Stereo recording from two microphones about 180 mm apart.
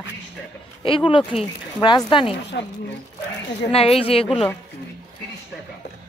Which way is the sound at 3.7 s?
35° left (ahead or behind).